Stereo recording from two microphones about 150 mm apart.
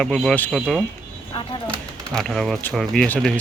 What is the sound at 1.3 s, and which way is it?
Speech, 35° left (ahead or behind).